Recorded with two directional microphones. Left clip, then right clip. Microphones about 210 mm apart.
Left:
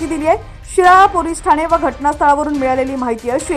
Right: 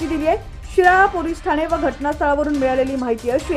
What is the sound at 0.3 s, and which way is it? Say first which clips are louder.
A woman's voice: left 8 dB; 10° left (ahead or behind).